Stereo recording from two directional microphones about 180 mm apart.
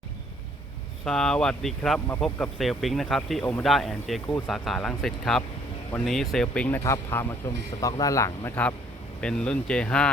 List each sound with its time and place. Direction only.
1.0 s speech: 5° left (ahead or behind)